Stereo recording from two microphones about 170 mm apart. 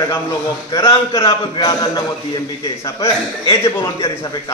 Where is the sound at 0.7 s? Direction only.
20° left (ahead or behind).